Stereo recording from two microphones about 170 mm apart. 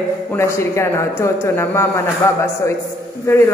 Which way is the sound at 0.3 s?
15° left (ahead or behind).